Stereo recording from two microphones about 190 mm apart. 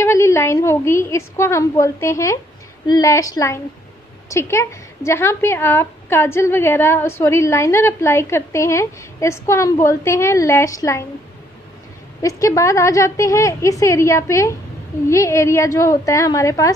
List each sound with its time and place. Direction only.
0.0 s a woman's voice: 15° left (ahead or behind)
12.2 s a woman's voice: 15° left (ahead or behind)